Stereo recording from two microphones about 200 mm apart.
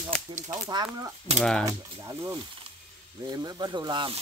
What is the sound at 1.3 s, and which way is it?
Speech, 30° right (ahead or behind).